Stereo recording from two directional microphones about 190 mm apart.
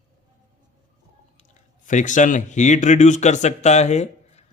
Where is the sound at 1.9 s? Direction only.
40° left (ahead or behind).